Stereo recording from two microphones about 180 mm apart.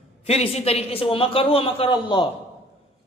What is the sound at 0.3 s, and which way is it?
A man's voice, 35° left (ahead or behind).